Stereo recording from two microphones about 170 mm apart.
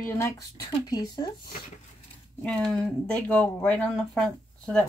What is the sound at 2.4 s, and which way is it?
Speech, 5° left (ahead or behind).